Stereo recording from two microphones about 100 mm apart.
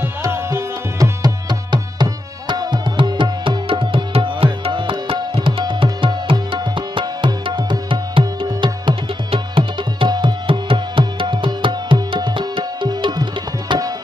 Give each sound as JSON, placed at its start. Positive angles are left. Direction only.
{"t": 0.3, "sound": "music", "side_deg": -25}
{"t": 1.2, "sound": "tabla", "side_deg": -45}
{"t": 8.5, "sound": "tabla", "side_deg": -50}
{"t": 9.3, "sound": "tabla", "side_deg": -60}